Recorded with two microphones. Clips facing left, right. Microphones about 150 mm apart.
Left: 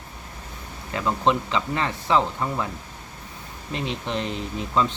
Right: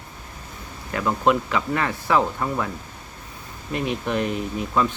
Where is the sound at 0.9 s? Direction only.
25° left (ahead or behind).